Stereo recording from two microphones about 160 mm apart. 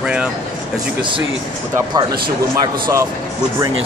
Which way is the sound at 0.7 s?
30° right (ahead or behind).